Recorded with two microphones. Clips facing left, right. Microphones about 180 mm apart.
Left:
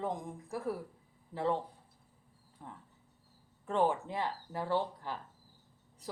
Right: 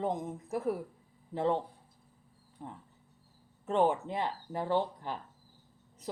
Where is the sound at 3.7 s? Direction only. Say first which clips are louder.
Right 3 dB; 20° right (ahead or behind).